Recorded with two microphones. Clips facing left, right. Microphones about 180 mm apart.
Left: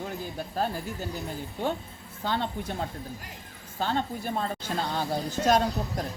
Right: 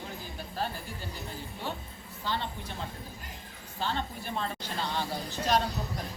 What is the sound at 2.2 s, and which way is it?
Speech, 50° left (ahead or behind).